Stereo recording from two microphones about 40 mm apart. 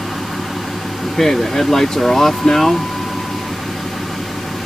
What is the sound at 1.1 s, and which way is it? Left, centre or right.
Speech, centre.